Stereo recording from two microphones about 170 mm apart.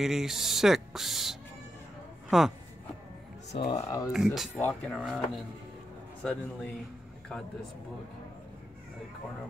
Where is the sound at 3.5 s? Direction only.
45° left (ahead or behind).